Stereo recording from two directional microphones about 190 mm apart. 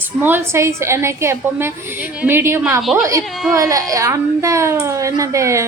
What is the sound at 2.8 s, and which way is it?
Speech, centre (ahead or behind).